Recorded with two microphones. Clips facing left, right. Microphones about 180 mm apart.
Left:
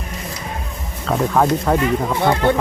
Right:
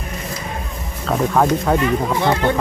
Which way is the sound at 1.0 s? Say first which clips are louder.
Even; centre (ahead or behind).